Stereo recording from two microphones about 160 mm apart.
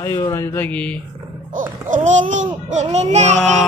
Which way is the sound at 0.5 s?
10° left (ahead or behind).